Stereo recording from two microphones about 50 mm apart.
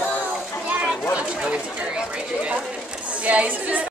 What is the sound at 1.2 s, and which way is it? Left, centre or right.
Speech, right.